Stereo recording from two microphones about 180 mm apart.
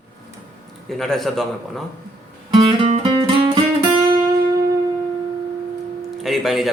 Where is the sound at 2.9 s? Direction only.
25° right (ahead or behind).